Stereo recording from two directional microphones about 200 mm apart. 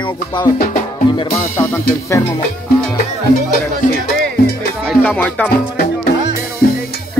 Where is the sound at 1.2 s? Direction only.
30° left (ahead or behind).